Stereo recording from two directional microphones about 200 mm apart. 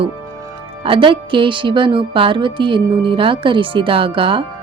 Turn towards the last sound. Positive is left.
turn(degrees=-25)  # may be behind; listen again after turning